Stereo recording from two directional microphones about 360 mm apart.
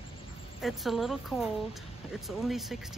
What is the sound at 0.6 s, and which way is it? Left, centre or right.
Speech, centre.